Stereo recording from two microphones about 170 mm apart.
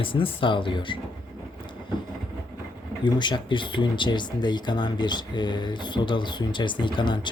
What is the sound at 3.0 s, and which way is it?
Speech, 25° left (ahead or behind).